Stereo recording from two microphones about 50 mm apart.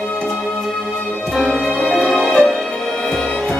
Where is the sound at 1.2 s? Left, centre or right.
Centre.